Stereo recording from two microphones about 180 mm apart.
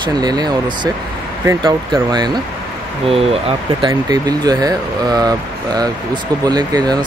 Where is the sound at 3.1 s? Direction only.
35° right (ahead or behind).